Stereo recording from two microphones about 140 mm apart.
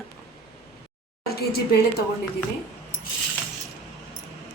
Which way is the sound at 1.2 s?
90° left.